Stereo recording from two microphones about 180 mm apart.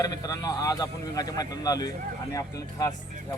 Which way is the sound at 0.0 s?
20° left (ahead or behind).